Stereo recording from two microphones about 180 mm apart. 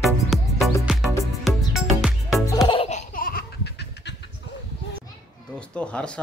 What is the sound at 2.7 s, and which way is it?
Laughter, 35° left (ahead or behind).